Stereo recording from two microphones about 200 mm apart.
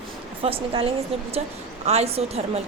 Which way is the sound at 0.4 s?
30° right (ahead or behind).